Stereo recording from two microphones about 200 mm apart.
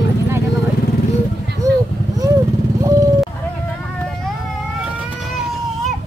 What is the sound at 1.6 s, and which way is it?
Vehicle, 15° right (ahead or behind).